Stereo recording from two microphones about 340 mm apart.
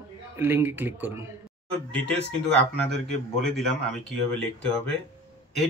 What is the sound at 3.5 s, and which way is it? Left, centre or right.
Speech, centre.